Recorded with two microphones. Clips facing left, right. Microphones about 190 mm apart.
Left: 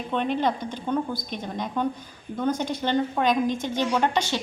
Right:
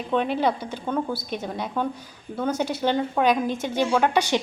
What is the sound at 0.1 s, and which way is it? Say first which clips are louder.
A woman's voice: right 2 dB; 10° right (ahead or behind).